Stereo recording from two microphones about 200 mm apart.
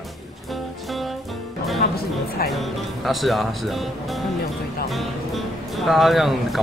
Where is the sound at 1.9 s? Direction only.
50° left (ahead or behind).